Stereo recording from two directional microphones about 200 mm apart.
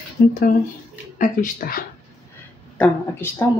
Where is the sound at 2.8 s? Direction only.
10° left (ahead or behind).